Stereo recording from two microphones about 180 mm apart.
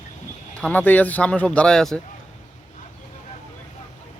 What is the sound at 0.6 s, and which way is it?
Speech, 10° left (ahead or behind).